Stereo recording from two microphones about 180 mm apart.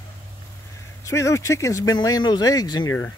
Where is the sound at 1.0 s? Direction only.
15° left (ahead or behind).